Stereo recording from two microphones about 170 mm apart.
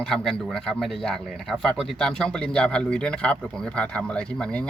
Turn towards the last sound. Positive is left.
turn(degrees=5)  # may be behind; listen again after turning